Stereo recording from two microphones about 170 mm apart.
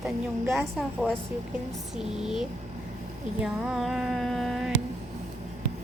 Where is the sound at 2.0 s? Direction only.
5° right (ahead or behind).